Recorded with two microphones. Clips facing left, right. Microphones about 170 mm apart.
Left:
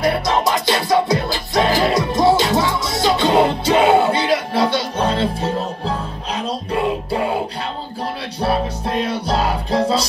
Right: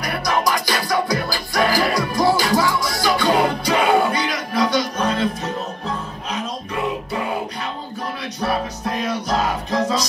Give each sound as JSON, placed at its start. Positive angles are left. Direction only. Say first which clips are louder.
{"t": 0.0, "sound": "music", "louder": "left 4 dB", "side_deg": 25}
{"t": 8.4, "sound": "music", "louder": "left 4 dB", "side_deg": 30}